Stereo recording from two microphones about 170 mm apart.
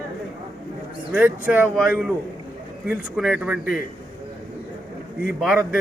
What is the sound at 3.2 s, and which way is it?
Speech, 5° right (ahead or behind).